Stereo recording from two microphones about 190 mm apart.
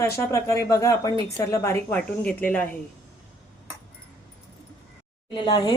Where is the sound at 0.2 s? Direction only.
15° left (ahead or behind).